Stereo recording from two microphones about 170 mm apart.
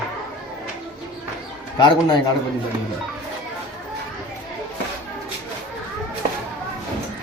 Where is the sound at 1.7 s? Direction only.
25° left (ahead or behind).